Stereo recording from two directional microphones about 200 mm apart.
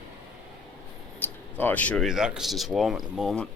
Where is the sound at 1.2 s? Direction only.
10° left (ahead or behind).